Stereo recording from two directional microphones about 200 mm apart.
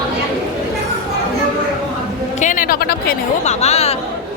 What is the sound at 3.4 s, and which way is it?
Speech, 35° left (ahead or behind).